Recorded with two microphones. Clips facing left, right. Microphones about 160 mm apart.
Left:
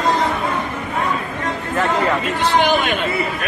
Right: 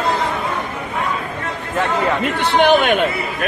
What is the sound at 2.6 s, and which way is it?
Speech, 60° right (ahead or behind).